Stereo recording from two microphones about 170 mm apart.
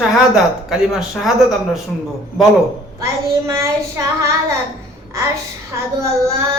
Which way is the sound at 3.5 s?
20° right (ahead or behind).